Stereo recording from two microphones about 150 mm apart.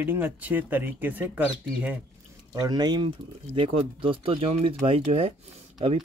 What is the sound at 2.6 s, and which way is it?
Speech, 25° right (ahead or behind).